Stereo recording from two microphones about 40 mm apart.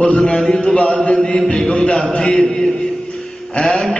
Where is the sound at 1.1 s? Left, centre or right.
Centre.